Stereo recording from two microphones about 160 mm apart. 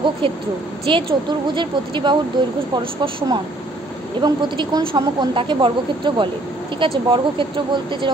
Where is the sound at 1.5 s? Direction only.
30° right (ahead or behind).